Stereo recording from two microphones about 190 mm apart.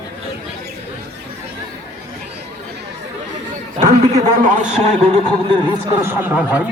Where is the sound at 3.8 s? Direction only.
40° right (ahead or behind).